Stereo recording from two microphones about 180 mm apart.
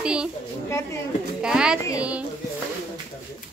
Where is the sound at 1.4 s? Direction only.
5° right (ahead or behind).